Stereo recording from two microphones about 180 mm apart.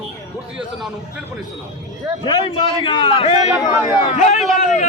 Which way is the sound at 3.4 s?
15° right (ahead or behind).